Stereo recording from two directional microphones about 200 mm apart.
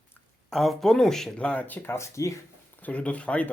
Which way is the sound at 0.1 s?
Centre (ahead or behind).